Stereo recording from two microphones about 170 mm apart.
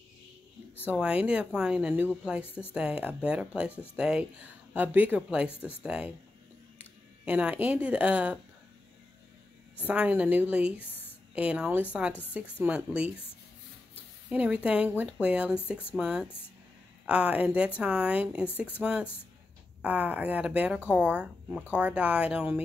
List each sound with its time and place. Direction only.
0.9 s speech: 5° right (ahead or behind)
2.4 s speech: 10° left (ahead or behind)
2.7 s speech: 5° right (ahead or behind)
7.2 s speech: 10° right (ahead or behind)
9.8 s speech: 10° right (ahead or behind)
14.3 s speech: 10° right (ahead or behind)